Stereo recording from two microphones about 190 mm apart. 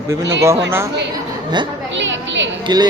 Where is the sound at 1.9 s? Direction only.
75° right (ahead or behind).